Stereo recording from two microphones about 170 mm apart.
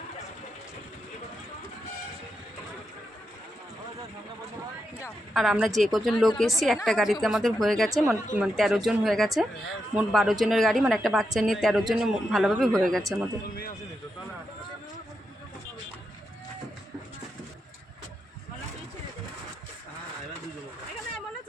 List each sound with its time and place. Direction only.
5.3 s a woman's voice: centre (ahead or behind)
13.0 s a man's voice: 20° right (ahead or behind)